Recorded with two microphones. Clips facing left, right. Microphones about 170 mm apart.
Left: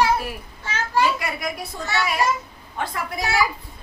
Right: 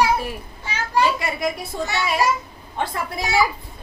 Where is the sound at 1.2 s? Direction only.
25° right (ahead or behind).